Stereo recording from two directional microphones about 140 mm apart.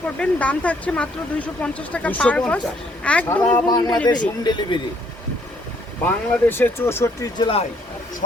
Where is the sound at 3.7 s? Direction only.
25° left (ahead or behind).